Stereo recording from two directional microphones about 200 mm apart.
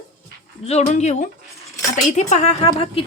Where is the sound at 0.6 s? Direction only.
35° left (ahead or behind).